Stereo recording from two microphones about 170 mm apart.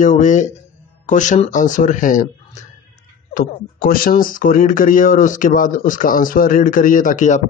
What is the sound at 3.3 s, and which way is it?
Speech, 60° left (ahead or behind).